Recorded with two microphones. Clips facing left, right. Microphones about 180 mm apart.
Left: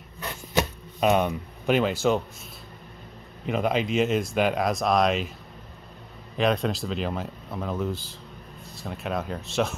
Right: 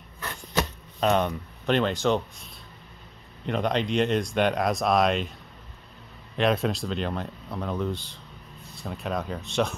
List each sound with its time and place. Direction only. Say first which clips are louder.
0.2 s a sound: left 2 dB; 15° left (ahead or behind)
3.4 s speech: left 1 dB; 5° left (ahead or behind)
6.3 s speech: even; centre (ahead or behind)